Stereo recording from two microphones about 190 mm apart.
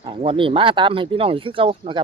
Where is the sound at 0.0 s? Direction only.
30° right (ahead or behind).